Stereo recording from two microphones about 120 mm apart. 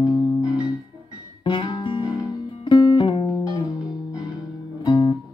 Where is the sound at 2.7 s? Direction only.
40° left (ahead or behind).